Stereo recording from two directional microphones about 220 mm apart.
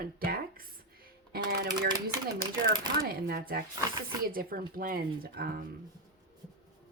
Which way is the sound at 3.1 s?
45° right (ahead or behind).